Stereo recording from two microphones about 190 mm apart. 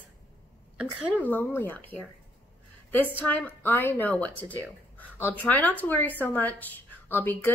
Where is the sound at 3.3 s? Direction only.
10° left (ahead or behind).